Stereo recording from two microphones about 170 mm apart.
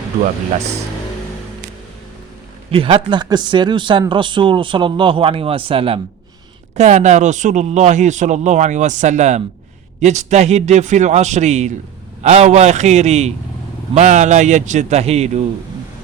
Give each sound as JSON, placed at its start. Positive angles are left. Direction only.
{"t": 2.7, "sound": "speech", "side_deg": -30}
{"t": 6.7, "sound": "a man's voice", "side_deg": -45}